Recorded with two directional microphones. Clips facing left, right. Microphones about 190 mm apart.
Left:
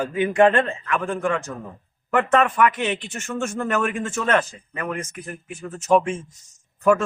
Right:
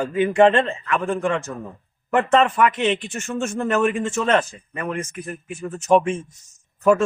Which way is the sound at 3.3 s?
10° right (ahead or behind).